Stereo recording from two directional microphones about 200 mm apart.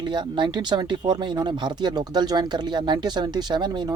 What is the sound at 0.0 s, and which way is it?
Speech, 20° right (ahead or behind).